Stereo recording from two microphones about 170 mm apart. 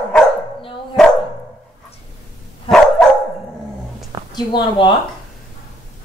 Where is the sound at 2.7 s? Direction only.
Centre (ahead or behind).